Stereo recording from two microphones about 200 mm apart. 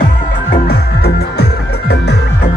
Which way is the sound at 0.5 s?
50° left (ahead or behind).